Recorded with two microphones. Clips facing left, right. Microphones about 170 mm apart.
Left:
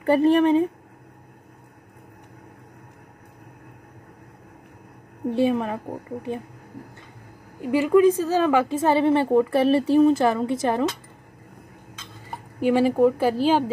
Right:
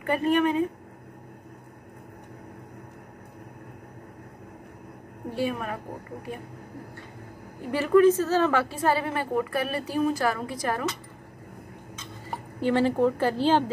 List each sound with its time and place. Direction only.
0.0 s speech: 30° left (ahead or behind)
5.3 s a woman's voice: 25° left (ahead or behind)
7.7 s a woman's voice: 15° left (ahead or behind)
12.5 s a woman's voice: 10° left (ahead or behind)